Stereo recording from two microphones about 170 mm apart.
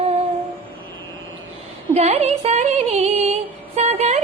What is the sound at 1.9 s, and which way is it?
Music, 35° right (ahead or behind).